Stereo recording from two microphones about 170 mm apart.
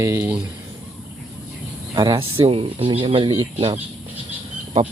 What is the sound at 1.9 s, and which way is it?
Speech, 30° right (ahead or behind).